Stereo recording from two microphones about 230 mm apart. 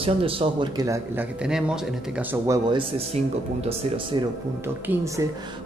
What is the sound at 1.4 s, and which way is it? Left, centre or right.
Speech, centre.